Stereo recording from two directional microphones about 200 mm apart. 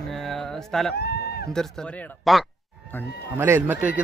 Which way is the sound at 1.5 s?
5° left (ahead or behind).